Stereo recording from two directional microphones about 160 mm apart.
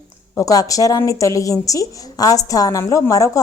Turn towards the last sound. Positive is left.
turn(degrees=20)  # may be behind; listen again after turning